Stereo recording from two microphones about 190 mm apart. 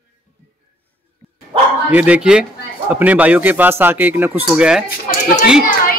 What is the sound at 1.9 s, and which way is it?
A man's voice, 5° right (ahead or behind).